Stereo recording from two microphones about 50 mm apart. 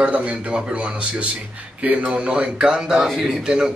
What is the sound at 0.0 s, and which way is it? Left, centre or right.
A man's voice, right.